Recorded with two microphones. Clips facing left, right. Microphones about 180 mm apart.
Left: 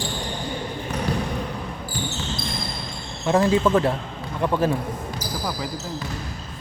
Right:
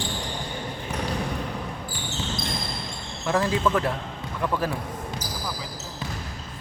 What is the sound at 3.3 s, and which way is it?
Speech, 25° left (ahead or behind).